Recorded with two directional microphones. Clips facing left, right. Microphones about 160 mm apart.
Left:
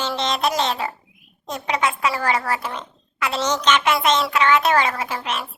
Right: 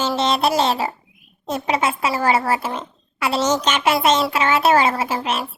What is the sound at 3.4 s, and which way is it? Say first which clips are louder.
Speech: right 4 dB; 10° right (ahead or behind).